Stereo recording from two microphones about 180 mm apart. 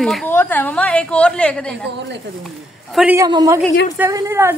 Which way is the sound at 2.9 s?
5° right (ahead or behind).